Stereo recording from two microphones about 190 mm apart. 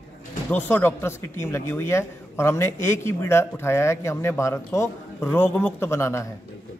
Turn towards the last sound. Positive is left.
turn(degrees=15)  # may be behind; listen again after turning